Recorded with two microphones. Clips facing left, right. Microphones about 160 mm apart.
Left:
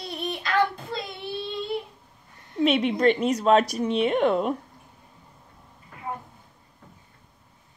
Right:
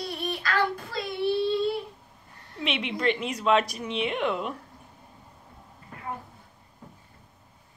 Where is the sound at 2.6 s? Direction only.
40° left (ahead or behind).